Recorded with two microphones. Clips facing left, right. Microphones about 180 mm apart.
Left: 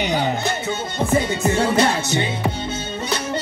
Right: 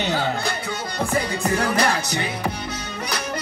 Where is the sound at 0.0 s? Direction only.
15° left (ahead or behind).